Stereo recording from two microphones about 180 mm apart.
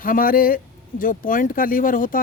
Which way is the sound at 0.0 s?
50° left (ahead or behind).